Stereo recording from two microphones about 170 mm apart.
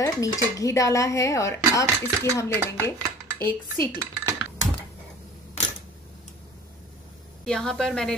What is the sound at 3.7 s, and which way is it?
Dishes, 60° left (ahead or behind).